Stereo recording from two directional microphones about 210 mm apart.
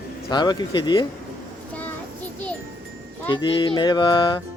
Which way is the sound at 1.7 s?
5° left (ahead or behind).